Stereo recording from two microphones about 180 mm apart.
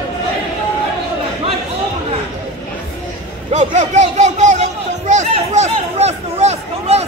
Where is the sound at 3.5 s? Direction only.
40° right (ahead or behind).